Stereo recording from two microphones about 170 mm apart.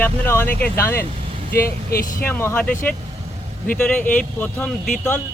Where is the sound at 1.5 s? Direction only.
60° left (ahead or behind).